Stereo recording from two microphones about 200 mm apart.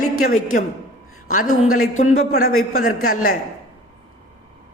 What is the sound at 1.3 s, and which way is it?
Speech, 45° left (ahead or behind).